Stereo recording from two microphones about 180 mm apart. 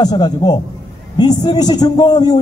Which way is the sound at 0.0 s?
25° left (ahead or behind).